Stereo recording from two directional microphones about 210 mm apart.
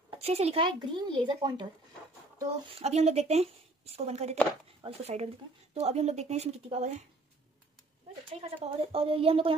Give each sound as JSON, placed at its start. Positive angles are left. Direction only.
{"t": 0.2, "sound": "speech", "side_deg": -30}
{"t": 8.3, "sound": "speech", "side_deg": -25}